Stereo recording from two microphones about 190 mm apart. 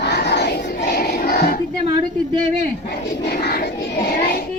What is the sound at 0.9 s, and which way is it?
Choir, 55° left (ahead or behind).